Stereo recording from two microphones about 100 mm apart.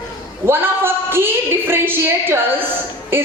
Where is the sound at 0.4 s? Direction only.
20° right (ahead or behind).